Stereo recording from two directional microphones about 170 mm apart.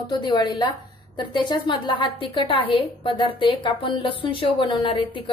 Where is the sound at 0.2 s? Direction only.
25° left (ahead or behind).